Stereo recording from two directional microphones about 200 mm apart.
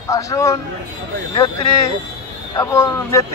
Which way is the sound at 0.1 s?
15° left (ahead or behind).